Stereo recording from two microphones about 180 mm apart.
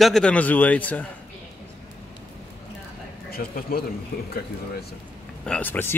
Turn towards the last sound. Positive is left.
turn(degrees=10)  # may be behind; listen again after turning